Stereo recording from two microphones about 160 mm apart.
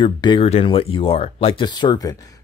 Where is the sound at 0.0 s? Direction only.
30° left (ahead or behind).